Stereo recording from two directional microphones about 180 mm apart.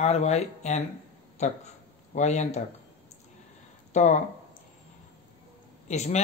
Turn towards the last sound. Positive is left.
turn(degrees=40)  # may be behind; listen again after turning